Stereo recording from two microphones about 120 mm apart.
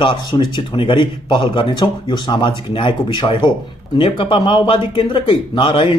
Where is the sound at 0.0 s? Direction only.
45° left (ahead or behind).